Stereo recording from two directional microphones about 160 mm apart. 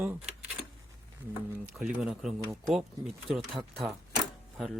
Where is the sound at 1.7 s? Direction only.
5° right (ahead or behind).